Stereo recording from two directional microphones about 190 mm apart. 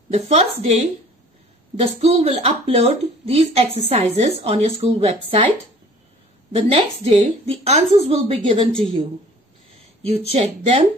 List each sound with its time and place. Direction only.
0.1 s speech: 35° right (ahead or behind)
2.0 s speech: 30° right (ahead or behind)
6.5 s speech: 30° right (ahead or behind)
10.3 s speech: 35° right (ahead or behind)